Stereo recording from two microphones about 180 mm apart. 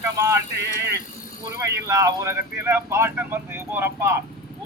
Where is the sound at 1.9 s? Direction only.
15° right (ahead or behind).